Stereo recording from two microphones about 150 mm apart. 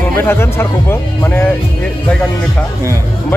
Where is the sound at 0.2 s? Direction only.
15° left (ahead or behind).